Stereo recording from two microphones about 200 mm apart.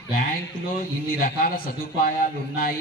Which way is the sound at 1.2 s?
45° left (ahead or behind).